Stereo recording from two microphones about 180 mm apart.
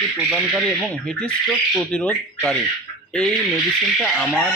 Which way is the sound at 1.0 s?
Centre (ahead or behind).